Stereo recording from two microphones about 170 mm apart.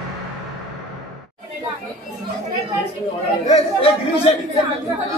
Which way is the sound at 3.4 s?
35° left (ahead or behind).